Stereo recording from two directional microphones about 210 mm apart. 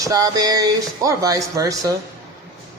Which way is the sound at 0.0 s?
15° right (ahead or behind).